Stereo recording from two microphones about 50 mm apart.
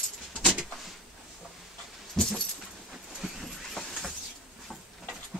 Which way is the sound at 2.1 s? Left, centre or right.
Centre.